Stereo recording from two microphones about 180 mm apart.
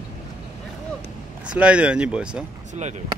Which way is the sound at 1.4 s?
5° right (ahead or behind).